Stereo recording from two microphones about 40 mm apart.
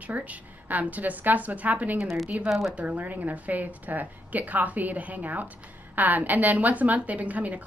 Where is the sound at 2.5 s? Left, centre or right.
Centre.